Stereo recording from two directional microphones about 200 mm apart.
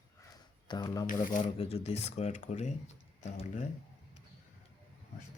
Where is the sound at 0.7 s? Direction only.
20° left (ahead or behind).